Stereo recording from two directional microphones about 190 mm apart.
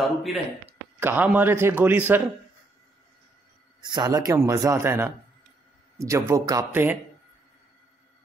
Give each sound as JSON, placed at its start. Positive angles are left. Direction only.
{"t": 0.2, "sound": "a man's voice", "side_deg": 0}
{"t": 3.8, "sound": "a man's voice", "side_deg": -25}